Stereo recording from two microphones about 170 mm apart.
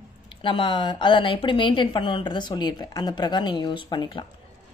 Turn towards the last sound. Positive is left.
turn(degrees=30)  # may be behind; listen again after turning